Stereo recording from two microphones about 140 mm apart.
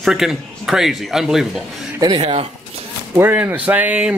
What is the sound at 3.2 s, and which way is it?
Speech, 15° right (ahead or behind).